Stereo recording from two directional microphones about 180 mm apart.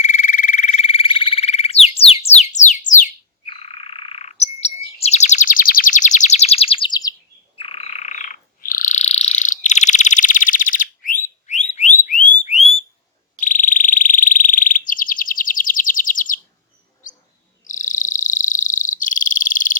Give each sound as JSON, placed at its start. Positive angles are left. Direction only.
{"t": 0.0, "sound": "frog", "side_deg": 40}
{"t": 3.4, "sound": "frog", "side_deg": 30}
{"t": 11.7, "sound": "a sound", "side_deg": 45}
{"t": 12.5, "sound": "alarm", "side_deg": 40}
{"t": 13.4, "sound": "frog", "side_deg": 45}
{"t": 14.8, "sound": "chirp", "side_deg": 50}
{"t": 17.7, "sound": "frog", "side_deg": 45}